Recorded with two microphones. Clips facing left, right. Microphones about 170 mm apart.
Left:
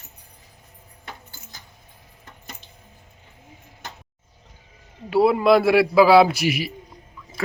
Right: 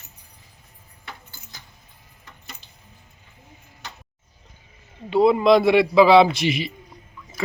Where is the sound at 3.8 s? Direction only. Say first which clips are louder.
Left 2 dB; 50° left (ahead or behind).